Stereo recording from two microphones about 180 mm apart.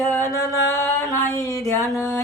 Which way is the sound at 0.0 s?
15° left (ahead or behind).